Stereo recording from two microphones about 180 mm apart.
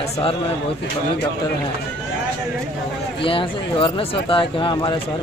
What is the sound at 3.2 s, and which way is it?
Speech, 30° left (ahead or behind).